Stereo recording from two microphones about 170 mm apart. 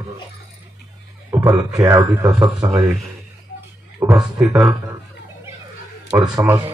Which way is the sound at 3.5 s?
65° left (ahead or behind).